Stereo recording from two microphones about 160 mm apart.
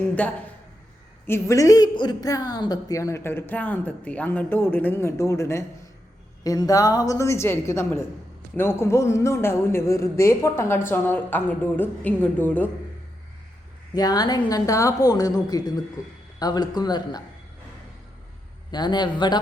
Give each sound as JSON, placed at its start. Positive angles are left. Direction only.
{"t": 1.3, "sound": "a woman's voice", "side_deg": 20}
{"t": 13.9, "sound": "a woman's voice", "side_deg": 25}
{"t": 18.7, "sound": "a woman's voice", "side_deg": 25}